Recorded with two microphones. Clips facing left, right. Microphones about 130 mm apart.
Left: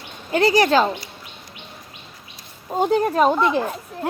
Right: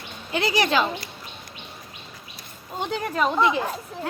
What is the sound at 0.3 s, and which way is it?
Speech, 40° left (ahead or behind).